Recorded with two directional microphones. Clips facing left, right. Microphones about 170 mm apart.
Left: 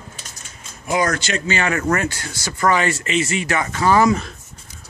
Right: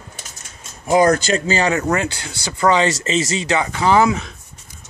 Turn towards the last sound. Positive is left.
turn(degrees=-10)  # may be behind; listen again after turning